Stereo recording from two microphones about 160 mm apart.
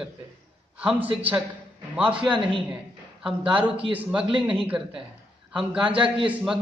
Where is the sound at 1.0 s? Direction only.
35° right (ahead or behind).